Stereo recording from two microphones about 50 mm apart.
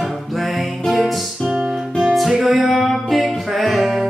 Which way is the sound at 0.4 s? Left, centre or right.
Centre.